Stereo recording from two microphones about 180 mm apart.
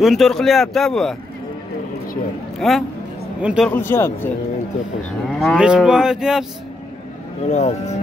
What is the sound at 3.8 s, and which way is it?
Speech, 15° left (ahead or behind).